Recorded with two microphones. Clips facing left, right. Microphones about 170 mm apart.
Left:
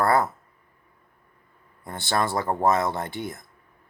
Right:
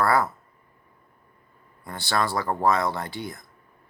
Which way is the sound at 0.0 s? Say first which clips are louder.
Left 1 dB; 25° left (ahead or behind).